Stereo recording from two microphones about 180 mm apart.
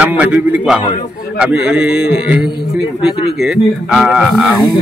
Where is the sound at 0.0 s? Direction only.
5° right (ahead or behind).